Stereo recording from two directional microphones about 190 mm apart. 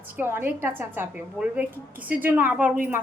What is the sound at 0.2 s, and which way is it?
A woman's voice, 10° right (ahead or behind).